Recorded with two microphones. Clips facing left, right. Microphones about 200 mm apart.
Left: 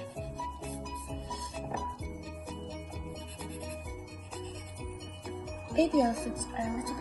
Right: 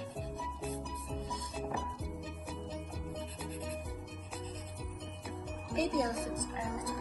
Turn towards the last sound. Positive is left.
turn(degrees=30)  # may be behind; listen again after turning